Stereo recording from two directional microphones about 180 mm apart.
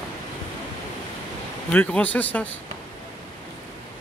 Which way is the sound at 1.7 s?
10° left (ahead or behind).